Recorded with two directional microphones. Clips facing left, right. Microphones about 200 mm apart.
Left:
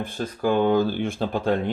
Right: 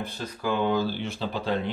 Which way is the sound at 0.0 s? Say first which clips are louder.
Left 6 dB; 50° left (ahead or behind).